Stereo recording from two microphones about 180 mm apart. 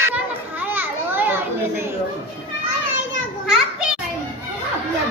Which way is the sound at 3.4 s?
5° right (ahead or behind).